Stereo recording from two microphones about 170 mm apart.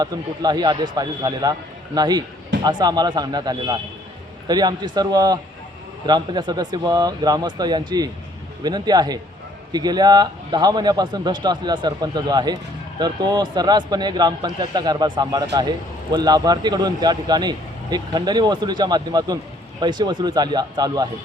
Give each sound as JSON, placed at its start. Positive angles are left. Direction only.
{"t": 0.0, "sound": "a man's voice", "side_deg": -25}